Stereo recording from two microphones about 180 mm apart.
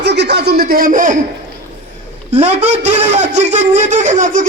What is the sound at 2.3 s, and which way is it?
Speech, 40° right (ahead or behind).